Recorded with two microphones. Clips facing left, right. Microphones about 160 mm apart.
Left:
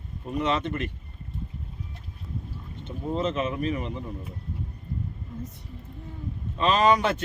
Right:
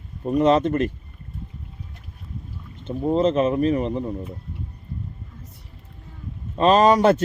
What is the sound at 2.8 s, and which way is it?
Speech, 35° right (ahead or behind).